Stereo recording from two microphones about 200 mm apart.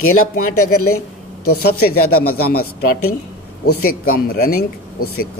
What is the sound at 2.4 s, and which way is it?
Speech, 50° left (ahead or behind).